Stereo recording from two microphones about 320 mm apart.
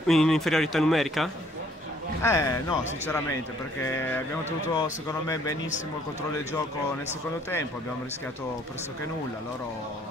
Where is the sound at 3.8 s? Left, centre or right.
Centre.